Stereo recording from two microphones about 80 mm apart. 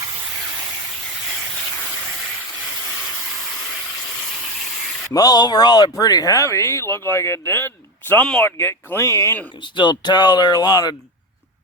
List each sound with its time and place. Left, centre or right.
5.1 s speech: left
9.7 s speech: left